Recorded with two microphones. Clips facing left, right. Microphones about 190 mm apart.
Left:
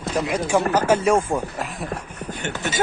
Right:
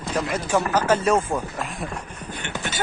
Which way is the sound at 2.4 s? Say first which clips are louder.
Left 5 dB; 45° left (ahead or behind).